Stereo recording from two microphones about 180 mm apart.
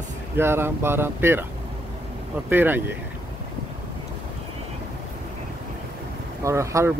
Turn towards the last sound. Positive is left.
turn(degrees=-15)  # may be behind; listen again after turning